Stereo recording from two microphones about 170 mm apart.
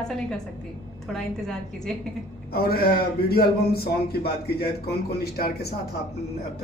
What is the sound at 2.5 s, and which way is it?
A man's voice, 65° left (ahead or behind).